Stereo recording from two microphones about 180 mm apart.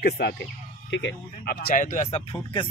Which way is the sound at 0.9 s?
80° left.